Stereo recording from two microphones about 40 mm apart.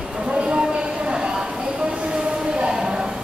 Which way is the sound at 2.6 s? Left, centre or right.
Centre.